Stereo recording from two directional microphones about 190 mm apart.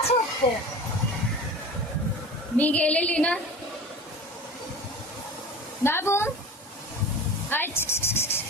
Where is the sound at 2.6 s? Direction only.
5° left (ahead or behind).